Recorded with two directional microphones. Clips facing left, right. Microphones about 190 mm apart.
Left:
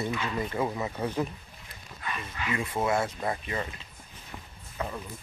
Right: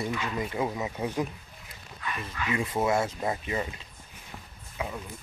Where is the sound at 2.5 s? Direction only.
25° right (ahead or behind).